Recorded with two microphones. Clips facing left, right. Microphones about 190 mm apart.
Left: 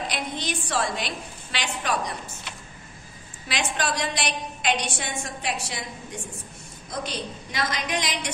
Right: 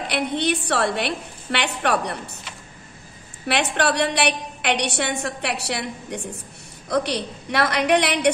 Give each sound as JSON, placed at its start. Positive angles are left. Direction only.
{"t": 0.1, "sound": "a woman's voice", "side_deg": -65}
{"t": 3.4, "sound": "a woman's voice", "side_deg": -65}